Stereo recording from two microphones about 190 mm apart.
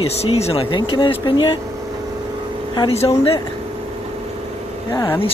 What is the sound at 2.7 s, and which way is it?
Speech, 25° left (ahead or behind).